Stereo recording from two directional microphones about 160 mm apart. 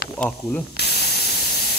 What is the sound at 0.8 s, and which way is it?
Spray, 90° left.